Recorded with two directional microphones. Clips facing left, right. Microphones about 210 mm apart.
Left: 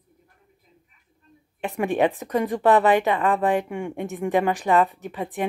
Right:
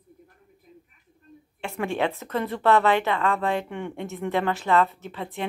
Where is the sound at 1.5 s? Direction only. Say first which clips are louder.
Left 5 dB; 15° left (ahead or behind).